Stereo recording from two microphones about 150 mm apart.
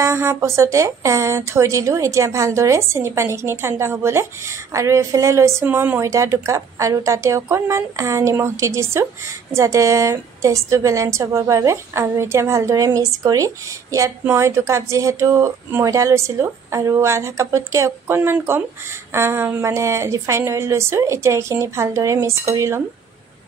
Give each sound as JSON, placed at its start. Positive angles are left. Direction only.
{"t": 0.0, "sound": "speech", "side_deg": -20}